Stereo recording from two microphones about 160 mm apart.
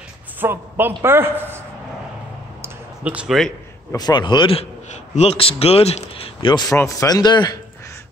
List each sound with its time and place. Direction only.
0.4 s a man's voice: 10° right (ahead or behind)
2.6 s a sound: 10° right (ahead or behind)
3.9 s a man's voice: 25° left (ahead or behind)